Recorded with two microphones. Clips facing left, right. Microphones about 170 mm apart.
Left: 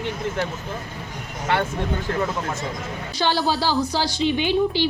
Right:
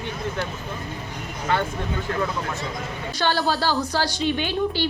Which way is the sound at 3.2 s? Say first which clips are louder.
Left 1 dB; 15° left (ahead or behind).